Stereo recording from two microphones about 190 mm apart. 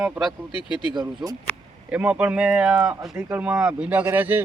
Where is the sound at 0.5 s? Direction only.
25° left (ahead or behind).